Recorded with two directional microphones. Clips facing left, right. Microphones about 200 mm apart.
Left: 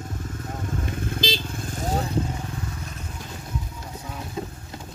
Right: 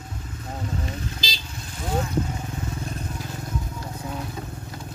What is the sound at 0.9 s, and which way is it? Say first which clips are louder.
Motorcycle: left 6 dB; 55° left (ahead or behind).